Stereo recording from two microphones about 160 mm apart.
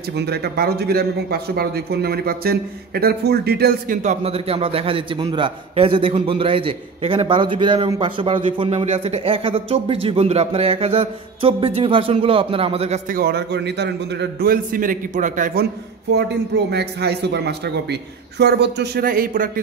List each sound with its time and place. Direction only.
0.1 s speech: 90° right
4.0 s a man's voice: 45° right (ahead or behind)
13.1 s speech: 80° right; by 15.6 s 55° right (ahead or behind)
16.1 s a man's voice: 90° right; by 19.6 s 60° right (ahead or behind)